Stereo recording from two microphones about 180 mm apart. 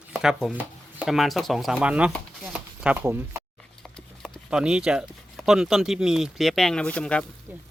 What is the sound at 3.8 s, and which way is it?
Speech, 5° left (ahead or behind).